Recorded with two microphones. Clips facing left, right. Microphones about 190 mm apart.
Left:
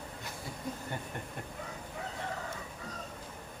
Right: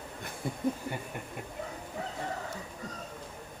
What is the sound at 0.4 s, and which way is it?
Chuckle, 55° right (ahead or behind).